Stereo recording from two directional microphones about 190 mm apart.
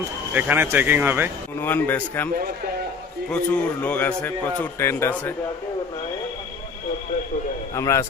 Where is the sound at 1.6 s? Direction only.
10° left (ahead or behind).